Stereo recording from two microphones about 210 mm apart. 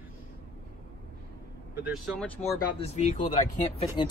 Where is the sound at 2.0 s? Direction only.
5° left (ahead or behind).